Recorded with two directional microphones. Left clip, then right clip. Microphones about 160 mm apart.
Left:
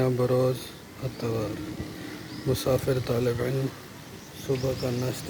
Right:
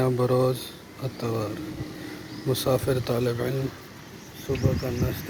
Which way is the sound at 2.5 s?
5° right (ahead or behind).